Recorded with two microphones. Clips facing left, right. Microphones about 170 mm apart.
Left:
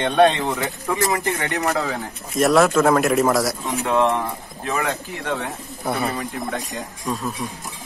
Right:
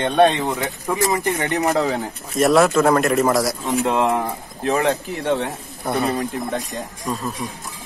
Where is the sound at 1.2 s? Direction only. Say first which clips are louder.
Right 2 dB; 20° right (ahead or behind).